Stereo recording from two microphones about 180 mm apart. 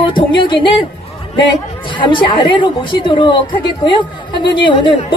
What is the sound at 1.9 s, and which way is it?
A woman's voice, 25° left (ahead or behind).